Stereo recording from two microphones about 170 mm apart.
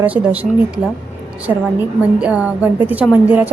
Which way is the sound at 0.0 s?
10° right (ahead or behind).